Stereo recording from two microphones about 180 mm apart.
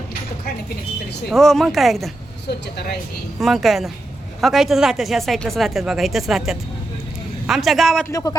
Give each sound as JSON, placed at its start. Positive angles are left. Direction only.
{"t": 1.3, "sound": "speech", "side_deg": 0}
{"t": 3.4, "sound": "speech", "side_deg": 0}
{"t": 8.1, "sound": "speech", "side_deg": 20}